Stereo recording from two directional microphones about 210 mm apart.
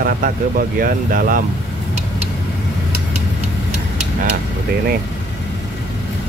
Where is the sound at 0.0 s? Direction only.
45° right (ahead or behind).